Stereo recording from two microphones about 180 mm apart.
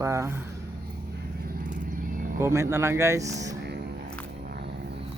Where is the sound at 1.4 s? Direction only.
50° right (ahead or behind).